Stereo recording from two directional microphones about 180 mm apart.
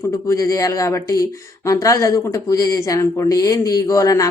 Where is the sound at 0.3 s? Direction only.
15° left (ahead or behind).